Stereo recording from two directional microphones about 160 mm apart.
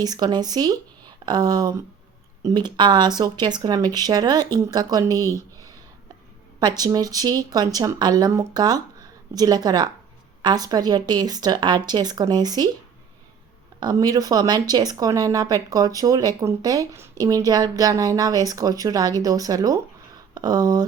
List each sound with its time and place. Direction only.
0.0 s speech: 25° right (ahead or behind)
6.6 s speech: 25° right (ahead or behind)
13.7 s speech: 25° right (ahead or behind)